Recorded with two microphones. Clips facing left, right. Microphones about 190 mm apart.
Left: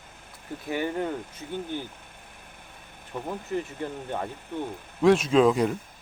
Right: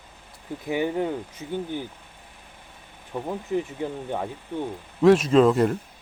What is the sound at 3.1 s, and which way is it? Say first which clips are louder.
Speech: right 4 dB; 15° right (ahead or behind).